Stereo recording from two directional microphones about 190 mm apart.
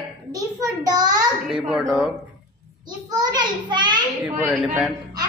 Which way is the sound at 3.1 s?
20° right (ahead or behind).